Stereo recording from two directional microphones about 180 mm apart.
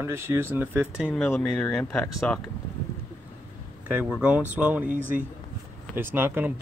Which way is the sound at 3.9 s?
5° right (ahead or behind).